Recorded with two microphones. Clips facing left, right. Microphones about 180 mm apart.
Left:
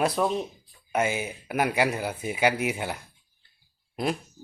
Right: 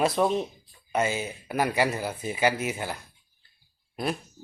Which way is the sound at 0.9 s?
10° left (ahead or behind).